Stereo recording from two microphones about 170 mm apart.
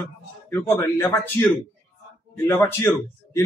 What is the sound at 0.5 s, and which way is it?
Speech, 15° left (ahead or behind).